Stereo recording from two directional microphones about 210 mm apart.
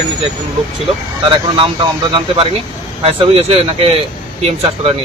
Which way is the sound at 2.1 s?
25° right (ahead or behind).